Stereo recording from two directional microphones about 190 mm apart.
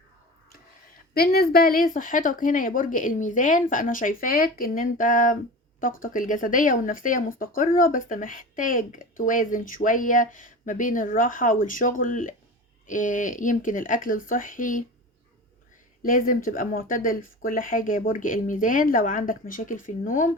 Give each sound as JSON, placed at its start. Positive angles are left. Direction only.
{"t": 1.1, "sound": "speech", "side_deg": 55}
{"t": 16.0, "sound": "speech", "side_deg": 45}